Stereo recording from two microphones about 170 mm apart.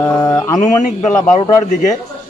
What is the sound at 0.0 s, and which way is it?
Speech, 25° left (ahead or behind).